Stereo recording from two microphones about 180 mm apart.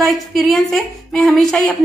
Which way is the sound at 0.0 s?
Centre (ahead or behind).